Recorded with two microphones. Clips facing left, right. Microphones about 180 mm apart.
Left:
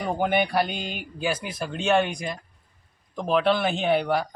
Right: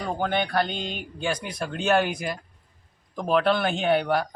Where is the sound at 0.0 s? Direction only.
15° left (ahead or behind).